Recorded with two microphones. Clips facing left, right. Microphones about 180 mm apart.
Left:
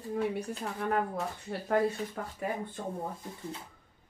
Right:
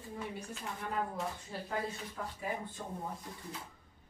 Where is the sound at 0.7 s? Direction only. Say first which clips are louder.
Left 7 dB; 60° left (ahead or behind).